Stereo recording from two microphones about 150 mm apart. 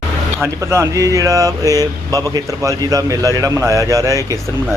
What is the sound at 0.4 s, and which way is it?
Speech, 20° right (ahead or behind).